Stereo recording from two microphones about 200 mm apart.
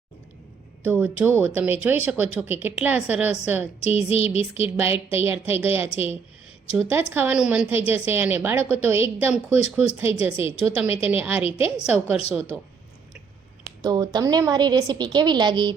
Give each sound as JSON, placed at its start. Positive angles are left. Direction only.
{"t": 0.9, "sound": "speech", "side_deg": -10}
{"t": 3.8, "sound": "a sound", "side_deg": 30}
{"t": 4.6, "sound": "a woman's voice", "side_deg": -10}
{"t": 11.4, "sound": "a woman's voice", "side_deg": 30}
{"t": 11.8, "sound": "a woman's voice", "side_deg": -5}
{"t": 13.8, "sound": "a woman's voice", "side_deg": -20}